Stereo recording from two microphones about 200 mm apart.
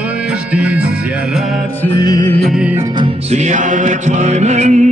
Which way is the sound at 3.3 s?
35° right (ahead or behind).